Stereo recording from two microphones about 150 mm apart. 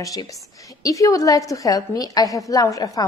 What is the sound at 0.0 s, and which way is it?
A woman's voice, 25° left (ahead or behind).